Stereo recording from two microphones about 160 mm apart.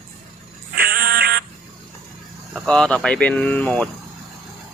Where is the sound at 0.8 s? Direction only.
70° right (ahead or behind).